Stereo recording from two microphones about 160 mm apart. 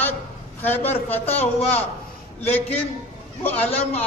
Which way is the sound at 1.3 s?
40° left (ahead or behind).